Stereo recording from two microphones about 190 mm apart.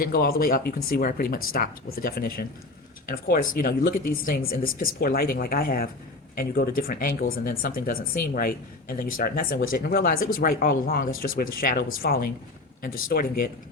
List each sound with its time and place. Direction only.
0.0 s speech: 55° left (ahead or behind)